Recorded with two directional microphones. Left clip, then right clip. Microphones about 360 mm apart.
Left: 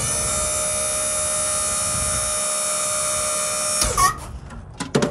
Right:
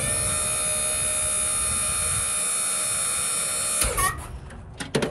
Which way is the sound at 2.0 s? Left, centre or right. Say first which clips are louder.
Left 5 dB; centre.